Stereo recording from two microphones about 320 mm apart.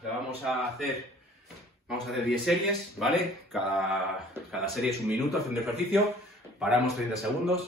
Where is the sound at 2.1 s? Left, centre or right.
Centre.